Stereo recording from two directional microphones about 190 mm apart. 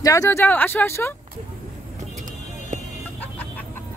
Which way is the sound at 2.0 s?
40° right (ahead or behind).